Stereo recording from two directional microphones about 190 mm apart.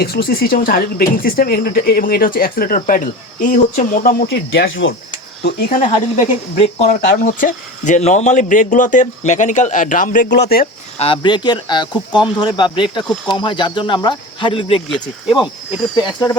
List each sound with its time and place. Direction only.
0.0 s speech: 55° left (ahead or behind)
4.7 s speech: 90° left
5.4 s speech: 55° left (ahead or behind)
10.9 s speech: 30° left (ahead or behind)
14.8 s speech: centre (ahead or behind)